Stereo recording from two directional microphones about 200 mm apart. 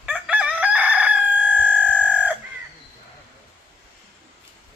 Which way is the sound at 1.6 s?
5° right (ahead or behind).